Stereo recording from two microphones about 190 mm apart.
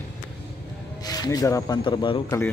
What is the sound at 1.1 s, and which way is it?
Speech, 20° left (ahead or behind).